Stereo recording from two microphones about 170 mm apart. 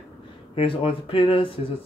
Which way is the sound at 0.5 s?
35° left (ahead or behind).